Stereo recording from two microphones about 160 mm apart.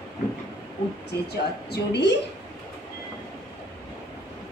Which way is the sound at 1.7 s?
90° left.